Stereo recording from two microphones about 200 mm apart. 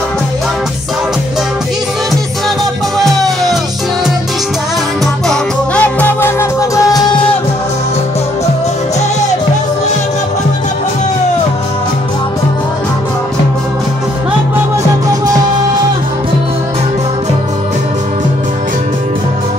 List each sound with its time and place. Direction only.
3.0 s music: centre (ahead or behind)
5.3 s music: 5° left (ahead or behind)